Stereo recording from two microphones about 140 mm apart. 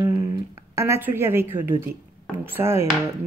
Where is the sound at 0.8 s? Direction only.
15° right (ahead or behind).